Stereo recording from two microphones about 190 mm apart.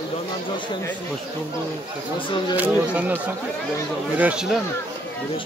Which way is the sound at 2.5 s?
10° right (ahead or behind).